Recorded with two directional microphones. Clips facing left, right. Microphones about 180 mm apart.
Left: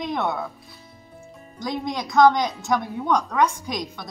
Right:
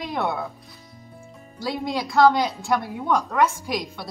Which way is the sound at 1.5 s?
5° right (ahead or behind).